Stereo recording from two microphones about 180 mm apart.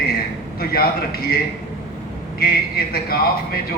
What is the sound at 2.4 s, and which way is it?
Speech, 55° left (ahead or behind).